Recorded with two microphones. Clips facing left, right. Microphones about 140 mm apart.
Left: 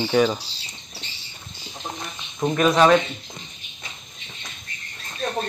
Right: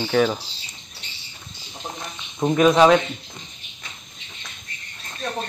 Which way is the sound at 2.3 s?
10° right (ahead or behind).